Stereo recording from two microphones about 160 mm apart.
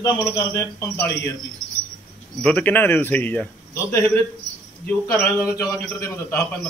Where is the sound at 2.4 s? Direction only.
10° left (ahead or behind).